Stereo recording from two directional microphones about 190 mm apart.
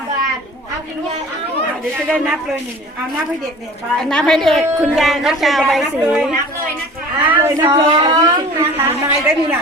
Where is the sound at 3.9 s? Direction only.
Centre (ahead or behind); by 8.8 s 20° right (ahead or behind).